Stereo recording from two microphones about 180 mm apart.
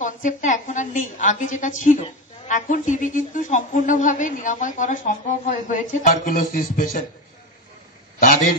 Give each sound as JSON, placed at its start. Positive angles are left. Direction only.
{"t": 0.0, "sound": "a woman's voice", "side_deg": 45}